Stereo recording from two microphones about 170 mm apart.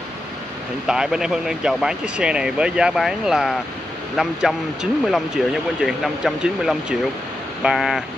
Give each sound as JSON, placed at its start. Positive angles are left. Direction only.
{"t": 0.8, "sound": "speech", "side_deg": -5}